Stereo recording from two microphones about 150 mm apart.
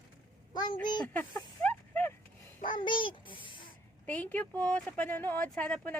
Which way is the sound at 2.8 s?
30° left (ahead or behind).